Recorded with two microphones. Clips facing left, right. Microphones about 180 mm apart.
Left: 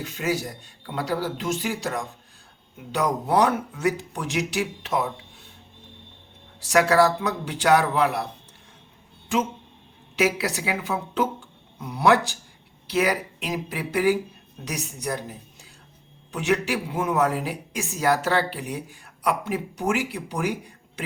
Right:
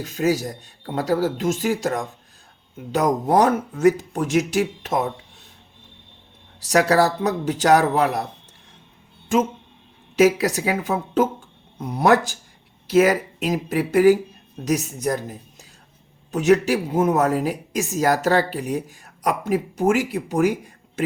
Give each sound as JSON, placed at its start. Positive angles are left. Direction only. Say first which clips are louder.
{"t": 0.0, "sound": "speech", "louder": "right 6 dB", "side_deg": -40}
{"t": 6.6, "sound": "a man's voice", "louder": "right 1 dB", "side_deg": -40}
{"t": 10.2, "sound": "speech", "louder": "right 7 dB", "side_deg": -45}